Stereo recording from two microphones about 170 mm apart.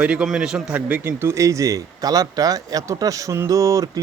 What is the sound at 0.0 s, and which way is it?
Speech, 5° right (ahead or behind).